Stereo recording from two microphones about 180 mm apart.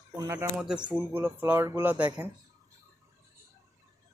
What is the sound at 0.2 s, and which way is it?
Speech, 15° right (ahead or behind).